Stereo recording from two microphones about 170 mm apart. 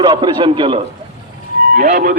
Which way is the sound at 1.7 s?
50° right (ahead or behind).